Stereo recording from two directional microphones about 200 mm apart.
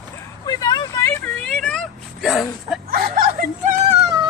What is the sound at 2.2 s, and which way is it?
Speech, centre (ahead or behind).